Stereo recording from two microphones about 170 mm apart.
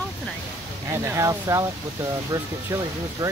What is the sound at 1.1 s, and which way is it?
Speech, 20° right (ahead or behind).